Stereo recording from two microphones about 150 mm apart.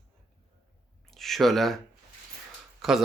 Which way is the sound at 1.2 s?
Centre (ahead or behind).